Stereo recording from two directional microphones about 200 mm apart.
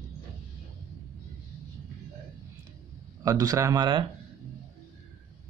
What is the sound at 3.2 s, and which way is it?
Speech, 20° right (ahead or behind).